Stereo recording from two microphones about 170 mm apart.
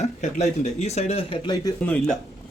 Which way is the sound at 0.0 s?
45° left (ahead or behind).